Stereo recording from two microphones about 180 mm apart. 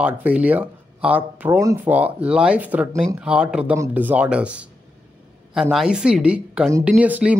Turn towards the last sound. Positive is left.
turn(degrees=-10)  # may be behind; listen again after turning